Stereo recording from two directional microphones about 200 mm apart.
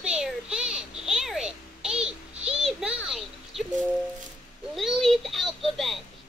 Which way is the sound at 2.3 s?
30° right (ahead or behind).